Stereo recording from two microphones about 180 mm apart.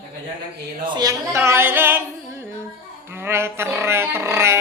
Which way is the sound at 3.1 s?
15° right (ahead or behind).